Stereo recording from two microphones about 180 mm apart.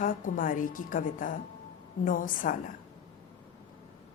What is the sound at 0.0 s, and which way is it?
A woman's voice, 50° left (ahead or behind).